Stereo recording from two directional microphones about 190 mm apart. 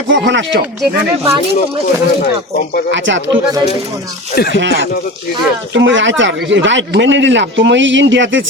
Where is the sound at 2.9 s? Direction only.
75° right (ahead or behind).